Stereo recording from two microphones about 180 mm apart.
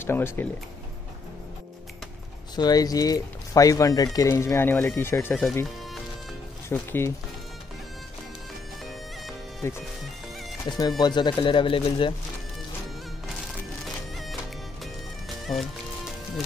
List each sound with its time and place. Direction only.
0.0 s speech: 10° left (ahead or behind)
2.5 s speech: 20° left (ahead or behind)
6.7 s speech: 15° left (ahead or behind)
9.6 s speech: 15° left (ahead or behind)
14.8 s music: centre (ahead or behind)